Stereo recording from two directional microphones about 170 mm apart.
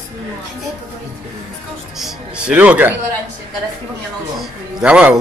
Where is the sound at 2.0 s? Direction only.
5° right (ahead or behind).